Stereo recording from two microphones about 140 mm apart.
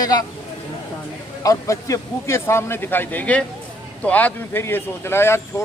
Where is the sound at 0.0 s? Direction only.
30° left (ahead or behind).